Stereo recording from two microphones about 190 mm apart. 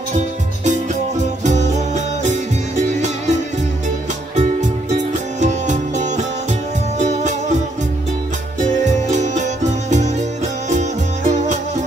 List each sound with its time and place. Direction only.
0.7 s music: 40° right (ahead or behind)
4.4 s music: 40° right (ahead or behind)
8.8 s music: 40° right (ahead or behind)